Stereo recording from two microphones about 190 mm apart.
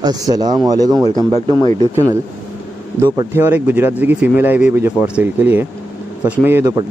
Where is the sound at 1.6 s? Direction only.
25° left (ahead or behind).